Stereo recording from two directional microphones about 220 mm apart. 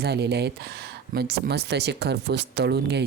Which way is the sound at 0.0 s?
50° right (ahead or behind).